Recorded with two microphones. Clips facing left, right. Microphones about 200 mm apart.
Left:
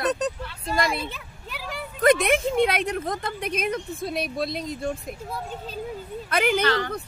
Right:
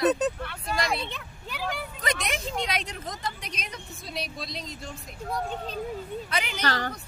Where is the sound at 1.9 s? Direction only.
55° left (ahead or behind).